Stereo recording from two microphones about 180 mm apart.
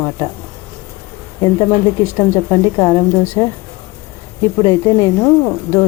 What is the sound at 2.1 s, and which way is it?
Speech, 15° left (ahead or behind).